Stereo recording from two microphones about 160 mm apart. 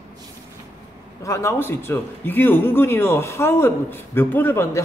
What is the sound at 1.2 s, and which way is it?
A man's voice, 20° left (ahead or behind).